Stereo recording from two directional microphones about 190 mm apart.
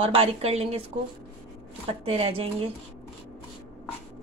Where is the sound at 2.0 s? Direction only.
30° right (ahead or behind).